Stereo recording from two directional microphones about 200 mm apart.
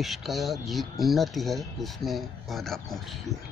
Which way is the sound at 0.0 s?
Centre (ahead or behind).